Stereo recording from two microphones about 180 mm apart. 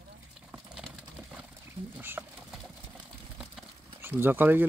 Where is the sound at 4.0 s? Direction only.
10° right (ahead or behind).